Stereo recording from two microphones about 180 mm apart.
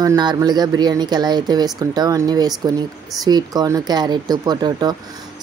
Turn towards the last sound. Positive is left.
turn(degrees=-20)  # may be behind; listen again after turning